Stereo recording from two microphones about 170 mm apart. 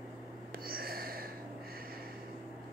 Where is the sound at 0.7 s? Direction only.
60° right (ahead or behind).